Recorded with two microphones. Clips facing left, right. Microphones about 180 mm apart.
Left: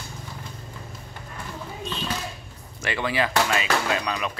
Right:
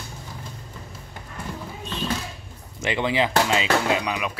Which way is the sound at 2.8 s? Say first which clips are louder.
Right 3 dB; 20° right (ahead or behind).